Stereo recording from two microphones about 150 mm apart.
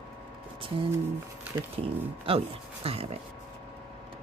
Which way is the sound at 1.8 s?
40° right (ahead or behind).